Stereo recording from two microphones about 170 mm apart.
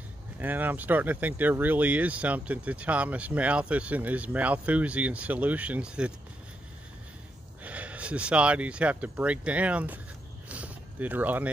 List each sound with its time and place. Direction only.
0.4 s speech: 10° right (ahead or behind)
7.6 s speech: 10° right (ahead or behind)
10.5 s a sound: 10° right (ahead or behind)